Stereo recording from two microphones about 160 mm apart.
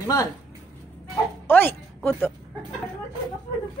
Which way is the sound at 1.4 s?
10° left (ahead or behind).